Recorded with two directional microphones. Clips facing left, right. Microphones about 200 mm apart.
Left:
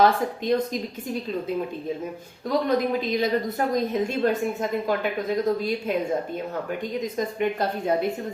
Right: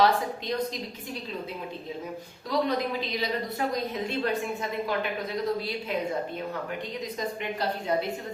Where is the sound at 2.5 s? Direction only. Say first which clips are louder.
Left 5 dB; 50° left (ahead or behind).